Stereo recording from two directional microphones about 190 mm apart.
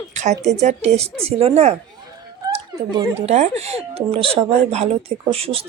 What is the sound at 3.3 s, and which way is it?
Speech, 35° right (ahead or behind).